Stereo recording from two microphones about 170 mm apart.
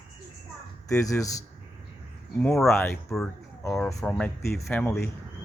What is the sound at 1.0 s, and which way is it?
Speech, 20° left (ahead or behind).